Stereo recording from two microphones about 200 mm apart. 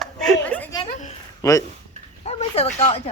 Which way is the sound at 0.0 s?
5° left (ahead or behind).